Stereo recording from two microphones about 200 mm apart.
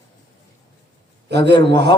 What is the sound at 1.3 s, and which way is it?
Speech, 60° right (ahead or behind).